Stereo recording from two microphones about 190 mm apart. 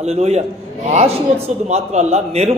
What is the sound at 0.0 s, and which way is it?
A man's voice, 35° right (ahead or behind).